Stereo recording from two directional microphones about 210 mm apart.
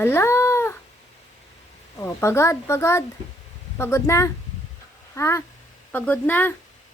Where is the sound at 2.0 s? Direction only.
15° left (ahead or behind).